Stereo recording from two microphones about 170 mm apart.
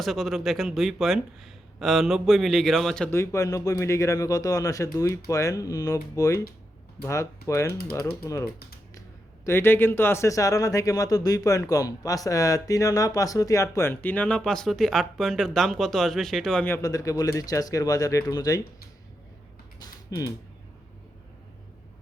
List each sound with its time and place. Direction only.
0.0 s speech: centre (ahead or behind)
3.1 s speech: 15° left (ahead or behind)
9.0 s speech: 15° left (ahead or behind)
16.7 s speech: 20° left (ahead or behind)
19.8 s typing: 20° left (ahead or behind)